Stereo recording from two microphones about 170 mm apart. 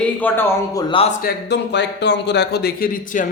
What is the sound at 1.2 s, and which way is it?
Speech, 70° left (ahead or behind).